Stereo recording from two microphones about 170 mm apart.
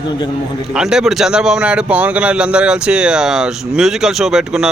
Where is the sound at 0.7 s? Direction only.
5° right (ahead or behind).